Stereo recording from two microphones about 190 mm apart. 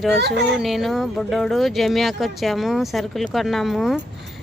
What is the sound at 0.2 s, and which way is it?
Speech, 60° right (ahead or behind).